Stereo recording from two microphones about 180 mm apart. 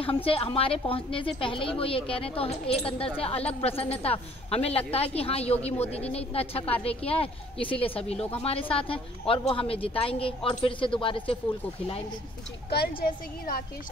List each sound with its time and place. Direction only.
0.0 s a woman's voice: 30° left (ahead or behind)
12.6 s a woman's voice: 60° left (ahead or behind)